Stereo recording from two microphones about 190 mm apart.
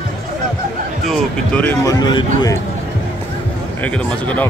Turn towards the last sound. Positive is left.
turn(degrees=5)  # may be behind; listen again after turning